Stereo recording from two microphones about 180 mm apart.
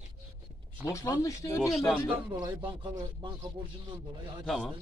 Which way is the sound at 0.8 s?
20° left (ahead or behind).